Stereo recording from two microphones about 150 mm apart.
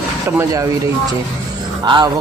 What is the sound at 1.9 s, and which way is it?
Speech, 30° right (ahead or behind).